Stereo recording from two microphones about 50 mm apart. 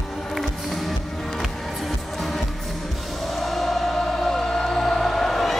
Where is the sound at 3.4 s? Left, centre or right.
Centre.